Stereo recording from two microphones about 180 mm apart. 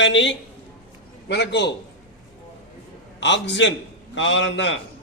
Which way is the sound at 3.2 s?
75° left (ahead or behind).